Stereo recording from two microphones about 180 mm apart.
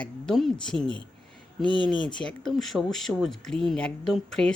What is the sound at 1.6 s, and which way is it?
Speech, 25° left (ahead or behind).